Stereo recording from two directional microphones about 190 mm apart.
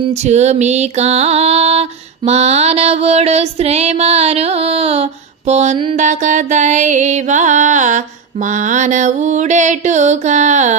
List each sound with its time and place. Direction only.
0.1 s mantra: 35° right (ahead or behind)